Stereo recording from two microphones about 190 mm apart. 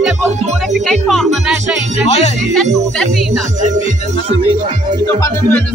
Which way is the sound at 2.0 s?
35° left (ahead or behind).